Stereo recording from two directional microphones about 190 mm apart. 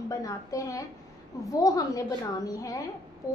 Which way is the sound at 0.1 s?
15° left (ahead or behind).